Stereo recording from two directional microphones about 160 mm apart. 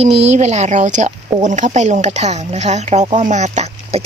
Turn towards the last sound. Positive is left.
turn(degrees=-40)  # may be behind; listen again after turning